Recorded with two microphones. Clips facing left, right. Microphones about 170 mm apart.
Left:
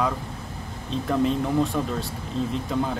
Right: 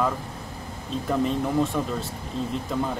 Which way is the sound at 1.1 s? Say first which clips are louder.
Left 1 dB; centre (ahead or behind).